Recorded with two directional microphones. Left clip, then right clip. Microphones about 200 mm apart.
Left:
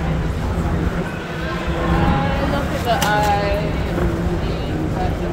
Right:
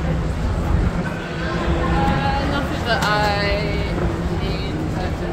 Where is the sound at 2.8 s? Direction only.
55° right (ahead or behind).